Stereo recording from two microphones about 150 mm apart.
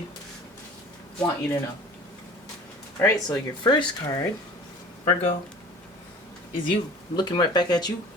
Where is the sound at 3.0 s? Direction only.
25° left (ahead or behind).